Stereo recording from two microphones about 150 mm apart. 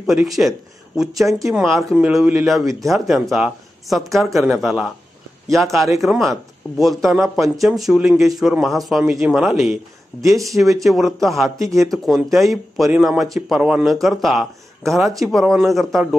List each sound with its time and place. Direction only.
0.0 s a man's voice: centre (ahead or behind)
2.6 s speech: 20° right (ahead or behind)
2.9 s a man's voice: centre (ahead or behind)